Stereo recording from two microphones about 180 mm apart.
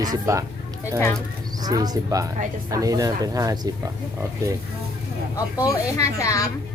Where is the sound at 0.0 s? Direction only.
20° right (ahead or behind).